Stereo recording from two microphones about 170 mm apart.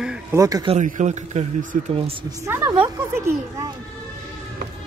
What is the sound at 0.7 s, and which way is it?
A man's voice, 45° right (ahead or behind).